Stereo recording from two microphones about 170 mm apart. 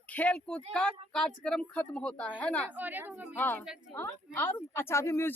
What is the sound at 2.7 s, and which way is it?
Speech, 10° right (ahead or behind).